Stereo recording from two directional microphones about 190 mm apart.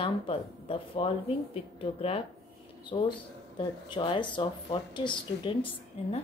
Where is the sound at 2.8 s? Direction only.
25° left (ahead or behind).